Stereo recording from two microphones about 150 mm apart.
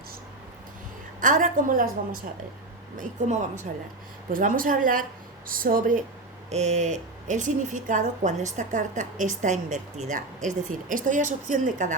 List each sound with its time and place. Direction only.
1.2 s a woman's voice: 60° right (ahead or behind)
3.0 s a woman's voice: 55° right (ahead or behind)
4.3 s a woman's voice: 65° right (ahead or behind)
6.5 s a woman's voice: 50° right (ahead or behind)